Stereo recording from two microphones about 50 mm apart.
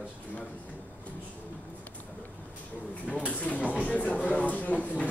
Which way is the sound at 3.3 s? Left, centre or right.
Left.